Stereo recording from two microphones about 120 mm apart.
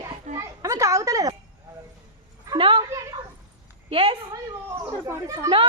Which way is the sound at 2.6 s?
45° right (ahead or behind).